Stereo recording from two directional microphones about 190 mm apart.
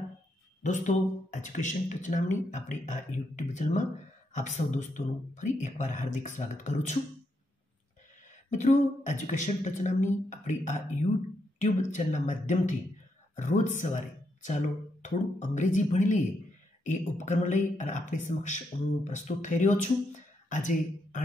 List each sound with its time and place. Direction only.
0.7 s speech: 40° left (ahead or behind)
8.5 s speech: 40° left (ahead or behind)